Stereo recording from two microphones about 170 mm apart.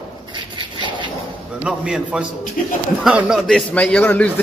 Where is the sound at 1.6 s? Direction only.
5° right (ahead or behind).